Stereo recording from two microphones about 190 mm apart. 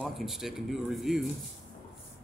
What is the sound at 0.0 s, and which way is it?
A man's voice, centre (ahead or behind).